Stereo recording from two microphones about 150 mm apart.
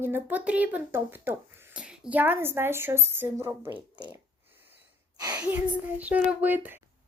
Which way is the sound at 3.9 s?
30° right (ahead or behind).